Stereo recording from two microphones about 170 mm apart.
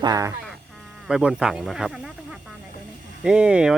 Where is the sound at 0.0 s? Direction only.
20° right (ahead or behind).